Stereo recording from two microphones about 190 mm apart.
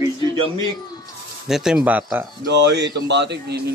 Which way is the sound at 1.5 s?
5° right (ahead or behind).